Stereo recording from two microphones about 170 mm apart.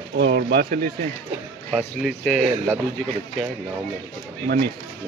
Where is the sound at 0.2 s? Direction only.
80° right.